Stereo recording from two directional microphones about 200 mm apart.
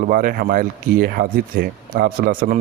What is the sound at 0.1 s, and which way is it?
Speech, 45° right (ahead or behind).